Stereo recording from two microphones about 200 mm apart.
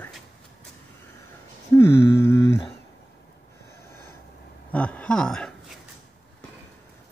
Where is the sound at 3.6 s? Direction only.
15° left (ahead or behind).